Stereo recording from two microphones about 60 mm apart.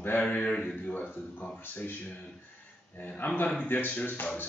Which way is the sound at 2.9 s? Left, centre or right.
Left.